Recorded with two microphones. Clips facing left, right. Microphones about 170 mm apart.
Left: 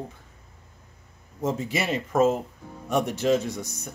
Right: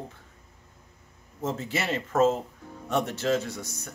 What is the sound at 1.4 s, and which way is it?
Speech, 15° left (ahead or behind).